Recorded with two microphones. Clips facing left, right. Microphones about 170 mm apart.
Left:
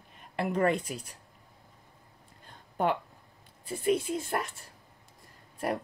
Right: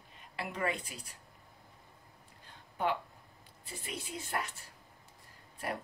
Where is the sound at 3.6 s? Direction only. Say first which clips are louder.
Left 16 dB; 50° left (ahead or behind).